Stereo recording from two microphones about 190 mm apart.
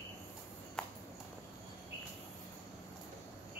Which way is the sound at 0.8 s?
5° left (ahead or behind).